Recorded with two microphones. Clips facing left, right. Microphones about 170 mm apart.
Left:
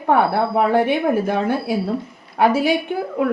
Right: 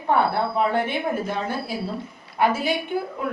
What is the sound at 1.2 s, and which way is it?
Speech, 60° left (ahead or behind).